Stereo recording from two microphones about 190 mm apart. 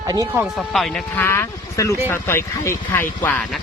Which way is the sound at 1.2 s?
15° left (ahead or behind).